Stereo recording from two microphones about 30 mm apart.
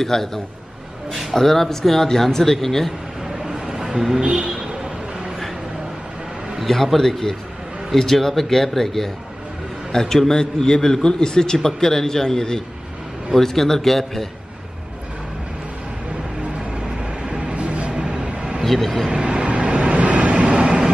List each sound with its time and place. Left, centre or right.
0.0 s speech: centre
3.5 s a sound: centre
6.7 s a man's voice: centre
16.4 s vehicle: right
18.7 s speech: centre
19.0 s train: right
20.6 s vehicle: right